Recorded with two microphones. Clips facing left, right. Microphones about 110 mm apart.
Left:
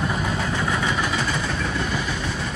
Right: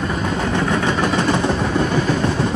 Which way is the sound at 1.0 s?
55° right (ahead or behind).